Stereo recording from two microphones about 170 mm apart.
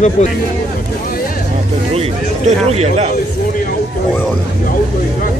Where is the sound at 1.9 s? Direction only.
40° right (ahead or behind).